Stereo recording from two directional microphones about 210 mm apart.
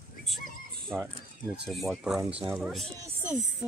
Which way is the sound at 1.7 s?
Centre (ahead or behind).